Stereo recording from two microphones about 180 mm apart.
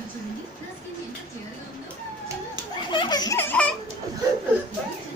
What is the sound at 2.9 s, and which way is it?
Laughter, 25° left (ahead or behind).